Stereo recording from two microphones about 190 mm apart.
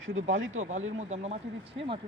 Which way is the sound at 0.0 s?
90° right.